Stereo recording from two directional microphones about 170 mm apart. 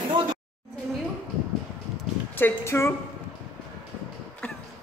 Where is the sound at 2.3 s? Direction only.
15° left (ahead or behind).